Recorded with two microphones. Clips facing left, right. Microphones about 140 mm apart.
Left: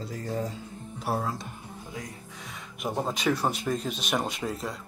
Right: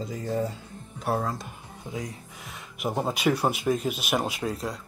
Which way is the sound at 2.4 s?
5° right (ahead or behind).